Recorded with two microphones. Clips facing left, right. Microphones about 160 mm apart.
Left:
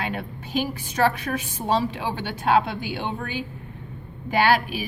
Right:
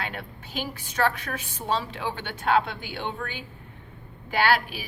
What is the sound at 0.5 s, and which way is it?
A woman's voice, 15° left (ahead or behind).